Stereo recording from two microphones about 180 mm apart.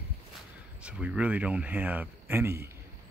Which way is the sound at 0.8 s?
5° right (ahead or behind).